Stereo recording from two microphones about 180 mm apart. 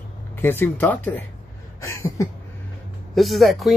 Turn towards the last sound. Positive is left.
turn(degrees=0)  # may be behind; listen again after turning